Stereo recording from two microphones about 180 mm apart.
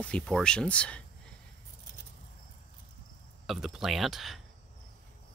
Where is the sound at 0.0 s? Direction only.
5° left (ahead or behind).